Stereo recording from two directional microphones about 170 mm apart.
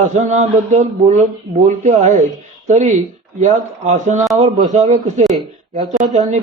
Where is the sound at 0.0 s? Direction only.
40° right (ahead or behind).